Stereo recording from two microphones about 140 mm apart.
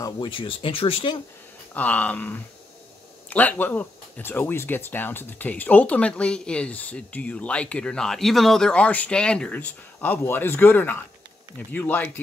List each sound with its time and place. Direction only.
0.0 s speech: 35° left (ahead or behind)
1.7 s speech: 10° left (ahead or behind)